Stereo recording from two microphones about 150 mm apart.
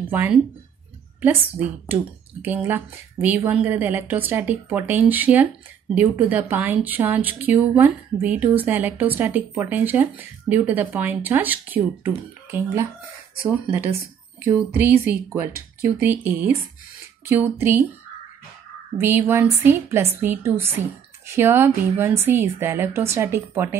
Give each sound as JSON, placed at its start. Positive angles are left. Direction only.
{"t": 0.1, "sound": "a woman's voice", "side_deg": -10}
{"t": 14.4, "sound": "a woman's voice", "side_deg": -15}
{"t": 17.3, "sound": "a woman's voice", "side_deg": -15}
{"t": 18.9, "sound": "a woman's voice", "side_deg": -15}